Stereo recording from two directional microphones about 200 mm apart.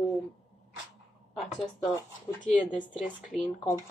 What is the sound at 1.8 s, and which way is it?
Speech, 15° left (ahead or behind).